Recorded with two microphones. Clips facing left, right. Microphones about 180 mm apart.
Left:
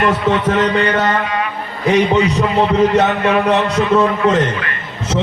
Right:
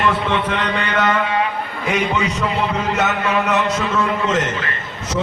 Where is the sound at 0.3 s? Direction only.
40° left (ahead or behind).